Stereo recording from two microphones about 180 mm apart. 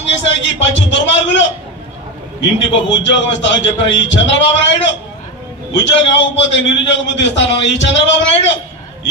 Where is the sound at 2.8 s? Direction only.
85° left.